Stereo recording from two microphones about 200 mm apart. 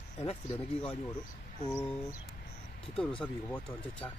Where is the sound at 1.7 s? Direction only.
10° left (ahead or behind).